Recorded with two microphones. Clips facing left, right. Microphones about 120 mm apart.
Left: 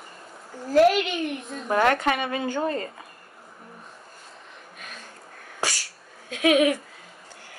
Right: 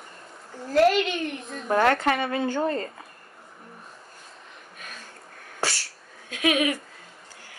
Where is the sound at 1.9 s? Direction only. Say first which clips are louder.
Right 1 dB; 15° left (ahead or behind).